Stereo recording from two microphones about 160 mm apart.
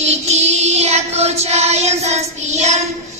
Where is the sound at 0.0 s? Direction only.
45° right (ahead or behind).